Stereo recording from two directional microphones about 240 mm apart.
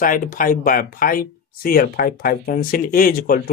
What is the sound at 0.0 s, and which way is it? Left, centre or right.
Speech, left.